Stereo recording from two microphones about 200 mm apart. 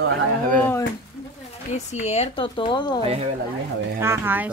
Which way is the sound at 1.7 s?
35° left (ahead or behind).